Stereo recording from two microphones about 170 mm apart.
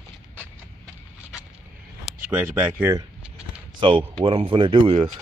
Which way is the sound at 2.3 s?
10° right (ahead or behind).